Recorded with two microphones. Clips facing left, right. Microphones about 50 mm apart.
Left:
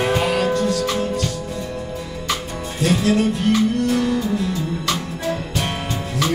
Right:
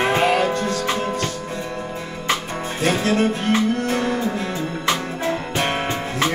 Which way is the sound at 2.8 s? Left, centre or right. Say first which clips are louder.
Left 1 dB; right.